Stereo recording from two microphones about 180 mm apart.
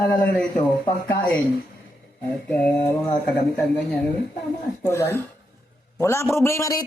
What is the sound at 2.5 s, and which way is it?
Speech, 10° left (ahead or behind).